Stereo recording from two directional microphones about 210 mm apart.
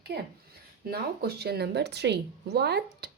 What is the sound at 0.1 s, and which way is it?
A woman's voice, 50° right (ahead or behind).